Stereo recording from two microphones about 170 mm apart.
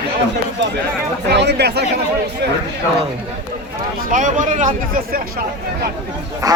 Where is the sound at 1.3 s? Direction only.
85° right.